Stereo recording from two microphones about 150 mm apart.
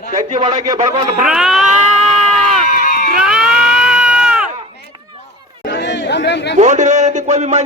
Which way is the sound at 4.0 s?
5° right (ahead or behind).